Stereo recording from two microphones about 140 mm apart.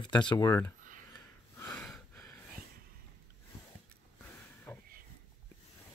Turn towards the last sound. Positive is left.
turn(degrees=15)  # may be behind; listen again after turning